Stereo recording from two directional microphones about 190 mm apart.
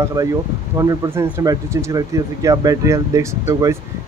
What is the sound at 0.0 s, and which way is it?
Speech, 20° right (ahead or behind).